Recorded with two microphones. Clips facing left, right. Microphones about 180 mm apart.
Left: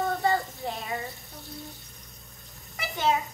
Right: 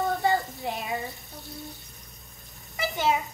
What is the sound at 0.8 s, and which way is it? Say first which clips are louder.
Water: right 2 dB; centre (ahead or behind).